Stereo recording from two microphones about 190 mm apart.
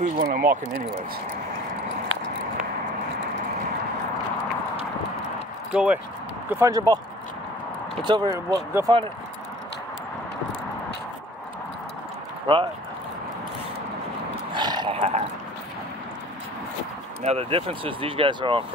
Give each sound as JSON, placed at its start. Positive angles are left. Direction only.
{"t": 0.0, "sound": "speech", "side_deg": -50}
{"t": 5.7, "sound": "speech", "side_deg": -5}
{"t": 6.5, "sound": "speech", "side_deg": -15}
{"t": 8.0, "sound": "speech", "side_deg": -25}
{"t": 14.5, "sound": "a sound", "side_deg": -25}
{"t": 17.2, "sound": "speech", "side_deg": -35}